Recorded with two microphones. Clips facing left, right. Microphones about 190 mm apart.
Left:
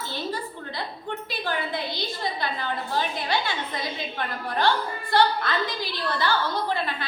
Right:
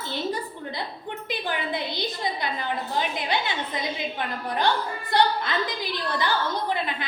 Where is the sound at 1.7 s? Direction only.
20° right (ahead or behind).